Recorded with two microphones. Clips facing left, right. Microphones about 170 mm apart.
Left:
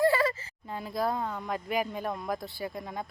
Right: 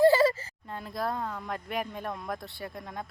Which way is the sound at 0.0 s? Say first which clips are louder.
Right 4 dB; 30° right (ahead or behind).